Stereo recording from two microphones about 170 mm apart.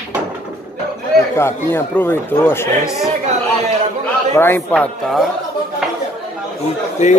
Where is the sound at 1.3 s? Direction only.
15° left (ahead or behind).